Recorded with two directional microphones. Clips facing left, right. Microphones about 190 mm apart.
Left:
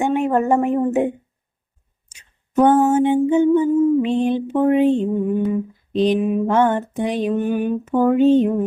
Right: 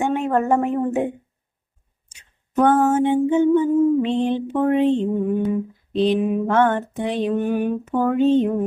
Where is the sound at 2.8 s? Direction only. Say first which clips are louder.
Left 2 dB; 15° left (ahead or behind).